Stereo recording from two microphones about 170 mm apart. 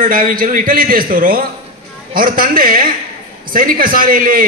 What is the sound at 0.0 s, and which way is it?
A man's voice, 55° right (ahead or behind).